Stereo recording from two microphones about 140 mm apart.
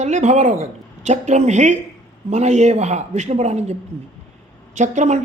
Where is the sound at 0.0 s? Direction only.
55° right (ahead or behind).